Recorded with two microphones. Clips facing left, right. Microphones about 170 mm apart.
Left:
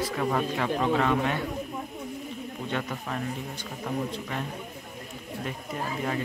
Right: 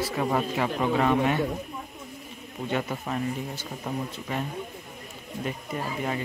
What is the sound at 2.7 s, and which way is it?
Speech, 15° right (ahead or behind).